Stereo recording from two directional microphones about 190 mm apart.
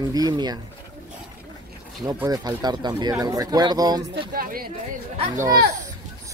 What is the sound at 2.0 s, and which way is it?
Speech, 20° right (ahead or behind).